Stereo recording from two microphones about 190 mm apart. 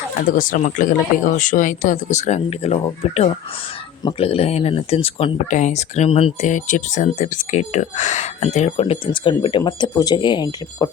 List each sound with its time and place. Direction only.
0.3 s speech: 45° left (ahead or behind)
4.0 s speech: 30° left (ahead or behind)